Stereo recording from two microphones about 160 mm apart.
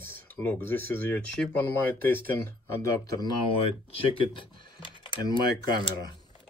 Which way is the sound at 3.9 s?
30° left (ahead or behind).